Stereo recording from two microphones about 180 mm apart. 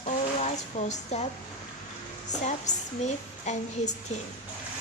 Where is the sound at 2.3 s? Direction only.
40° left (ahead or behind).